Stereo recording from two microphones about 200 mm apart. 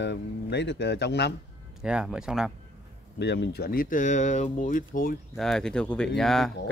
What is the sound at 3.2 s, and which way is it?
Speech, 60° left (ahead or behind).